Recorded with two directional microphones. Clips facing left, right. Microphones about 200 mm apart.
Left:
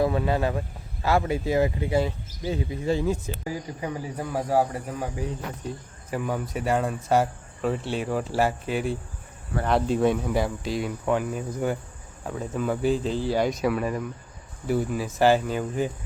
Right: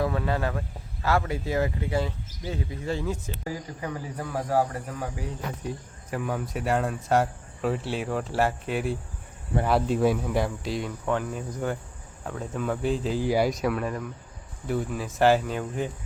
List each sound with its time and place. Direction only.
0.0 s speech: 20° left (ahead or behind)
6.1 s speech: centre (ahead or behind)
13.5 s speech: centre (ahead or behind)